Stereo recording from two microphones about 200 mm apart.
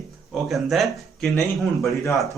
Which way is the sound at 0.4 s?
Centre (ahead or behind).